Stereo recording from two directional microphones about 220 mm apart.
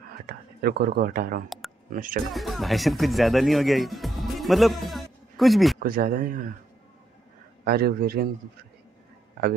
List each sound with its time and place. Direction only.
0.3 s speech: 45° right (ahead or behind)
2.3 s speech: centre (ahead or behind)
5.8 s speech: 40° right (ahead or behind)
7.6 s speech: 45° right (ahead or behind)